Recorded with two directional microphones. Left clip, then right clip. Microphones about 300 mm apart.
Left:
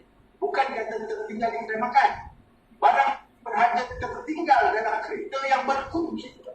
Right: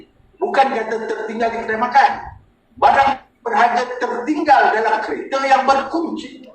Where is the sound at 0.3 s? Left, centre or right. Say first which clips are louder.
Right 9 dB; right.